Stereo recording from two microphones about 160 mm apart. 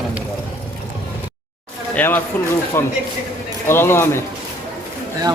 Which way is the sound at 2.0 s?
10° left (ahead or behind).